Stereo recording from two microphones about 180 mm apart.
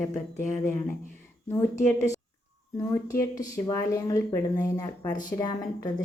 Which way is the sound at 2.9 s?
15° left (ahead or behind).